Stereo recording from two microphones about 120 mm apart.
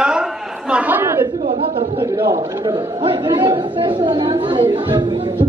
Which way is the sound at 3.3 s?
35° right (ahead or behind).